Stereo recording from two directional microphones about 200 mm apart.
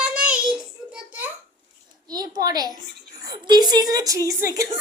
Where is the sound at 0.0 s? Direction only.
5° right (ahead or behind).